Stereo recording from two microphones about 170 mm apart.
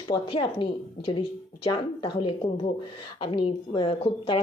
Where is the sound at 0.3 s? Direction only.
30° left (ahead or behind).